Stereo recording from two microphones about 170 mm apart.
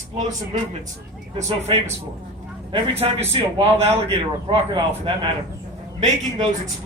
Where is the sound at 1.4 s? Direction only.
35° right (ahead or behind).